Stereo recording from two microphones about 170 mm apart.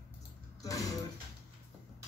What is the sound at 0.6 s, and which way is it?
Music, 20° left (ahead or behind).